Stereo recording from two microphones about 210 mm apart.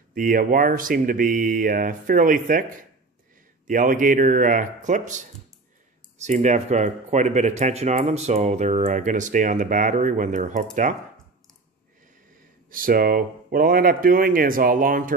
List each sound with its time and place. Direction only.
0.1 s speech: 40° right (ahead or behind)
3.6 s speech: 40° right (ahead or behind)
6.2 s speech: 35° right (ahead or behind)
12.7 s speech: 45° right (ahead or behind)